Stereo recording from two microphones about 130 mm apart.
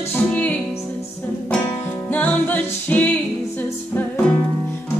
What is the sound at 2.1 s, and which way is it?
Music, 10° left (ahead or behind).